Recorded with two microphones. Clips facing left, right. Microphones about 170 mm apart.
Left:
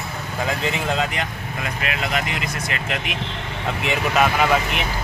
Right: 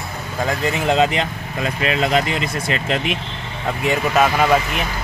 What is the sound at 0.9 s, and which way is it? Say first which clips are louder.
Speech: right 7 dB; 25° right (ahead or behind).